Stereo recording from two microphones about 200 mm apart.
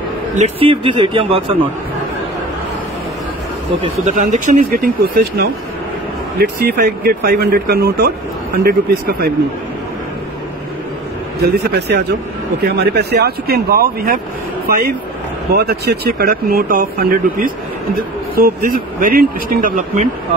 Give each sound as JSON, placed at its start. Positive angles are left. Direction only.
{"t": 0.4, "sound": "speech", "side_deg": -25}
{"t": 3.8, "sound": "speech", "side_deg": -35}
{"t": 11.4, "sound": "speech", "side_deg": -50}